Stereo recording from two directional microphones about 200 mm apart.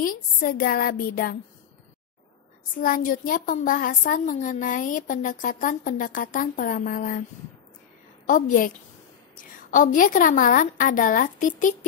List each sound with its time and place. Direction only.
0.0 s a woman's voice: 45° left (ahead or behind)
2.8 s a woman's voice: 45° left (ahead or behind)
8.3 s a woman's voice: 40° left (ahead or behind)